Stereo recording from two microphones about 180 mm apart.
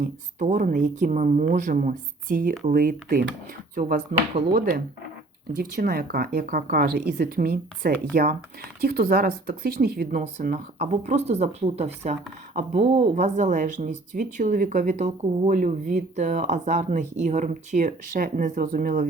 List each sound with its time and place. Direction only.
0.0 s speech: 45° right (ahead or behind)